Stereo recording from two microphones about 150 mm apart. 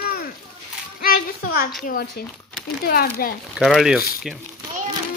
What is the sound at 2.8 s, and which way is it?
Speech, 85° left.